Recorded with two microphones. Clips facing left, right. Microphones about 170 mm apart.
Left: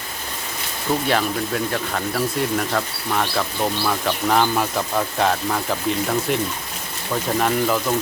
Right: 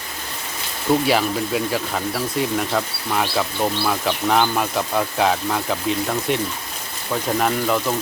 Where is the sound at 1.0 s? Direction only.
5° right (ahead or behind).